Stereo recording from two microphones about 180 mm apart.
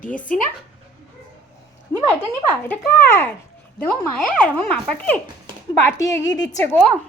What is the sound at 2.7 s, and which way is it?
Speech, 15° left (ahead or behind).